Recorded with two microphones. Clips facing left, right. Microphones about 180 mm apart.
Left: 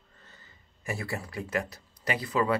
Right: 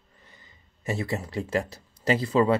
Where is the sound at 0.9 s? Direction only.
20° right (ahead or behind).